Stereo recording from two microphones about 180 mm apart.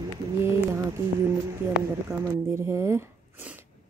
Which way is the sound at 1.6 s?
10° right (ahead or behind).